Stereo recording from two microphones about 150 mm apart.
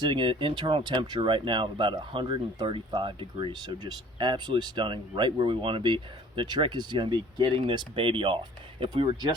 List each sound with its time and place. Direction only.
0.0 s speech: 35° right (ahead or behind)